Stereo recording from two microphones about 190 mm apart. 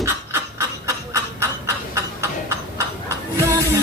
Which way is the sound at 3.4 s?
15° right (ahead or behind).